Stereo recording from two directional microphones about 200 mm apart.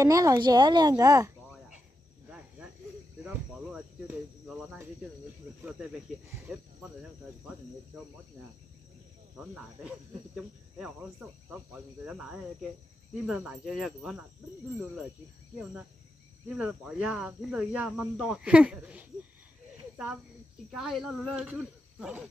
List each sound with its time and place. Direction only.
0.0 s a woman's voice: 15° right (ahead or behind)
3.3 s cricket: 5° right (ahead or behind)
5.6 s speech: 5° right (ahead or behind)
9.4 s speech: 5° right (ahead or behind)
16.4 s speech: 5° right (ahead or behind)
20.7 s speech: 5° right (ahead or behind)